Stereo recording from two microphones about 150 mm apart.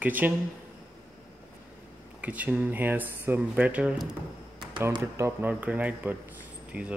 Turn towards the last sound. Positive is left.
turn(degrees=-10)  # may be behind; listen again after turning